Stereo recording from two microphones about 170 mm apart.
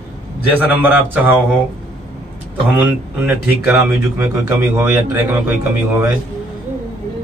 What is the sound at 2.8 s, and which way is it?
A man's voice, 10° right (ahead or behind).